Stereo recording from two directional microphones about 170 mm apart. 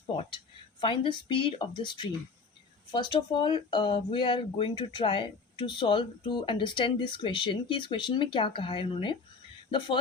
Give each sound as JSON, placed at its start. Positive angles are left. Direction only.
{"t": 0.8, "sound": "speech", "side_deg": 30}